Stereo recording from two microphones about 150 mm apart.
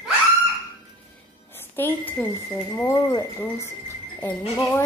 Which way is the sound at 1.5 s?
15° left (ahead or behind).